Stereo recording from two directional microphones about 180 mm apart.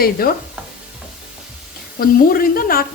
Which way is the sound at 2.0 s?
55° left (ahead or behind).